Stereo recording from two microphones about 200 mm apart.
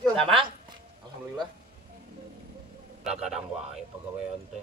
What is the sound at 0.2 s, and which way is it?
Speech, 25° right (ahead or behind).